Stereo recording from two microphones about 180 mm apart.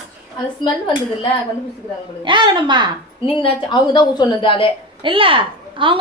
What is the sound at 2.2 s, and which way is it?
Speech, 25° right (ahead or behind).